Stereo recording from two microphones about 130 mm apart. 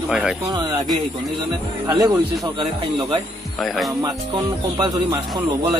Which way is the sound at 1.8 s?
30° right (ahead or behind).